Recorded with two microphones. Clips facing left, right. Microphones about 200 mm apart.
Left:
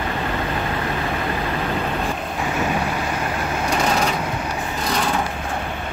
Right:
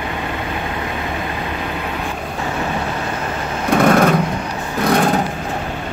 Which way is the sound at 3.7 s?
55° right (ahead or behind).